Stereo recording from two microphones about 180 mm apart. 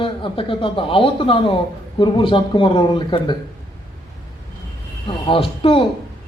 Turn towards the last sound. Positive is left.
turn(degrees=30)  # may be behind; listen again after turning